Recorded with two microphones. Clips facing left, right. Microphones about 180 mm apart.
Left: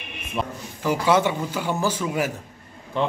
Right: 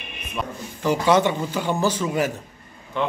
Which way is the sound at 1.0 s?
10° left (ahead or behind).